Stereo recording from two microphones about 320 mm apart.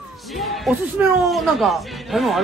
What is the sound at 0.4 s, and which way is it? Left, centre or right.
Speech, centre.